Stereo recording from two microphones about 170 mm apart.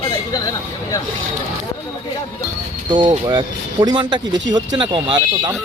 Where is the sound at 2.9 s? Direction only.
25° right (ahead or behind).